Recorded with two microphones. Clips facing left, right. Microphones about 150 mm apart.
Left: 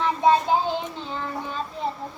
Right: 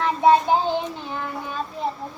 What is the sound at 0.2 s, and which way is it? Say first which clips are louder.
Child singing: right 3 dB; 15° right (ahead or behind).